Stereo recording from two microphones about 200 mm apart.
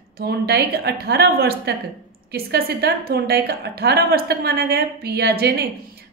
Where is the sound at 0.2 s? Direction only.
55° right (ahead or behind).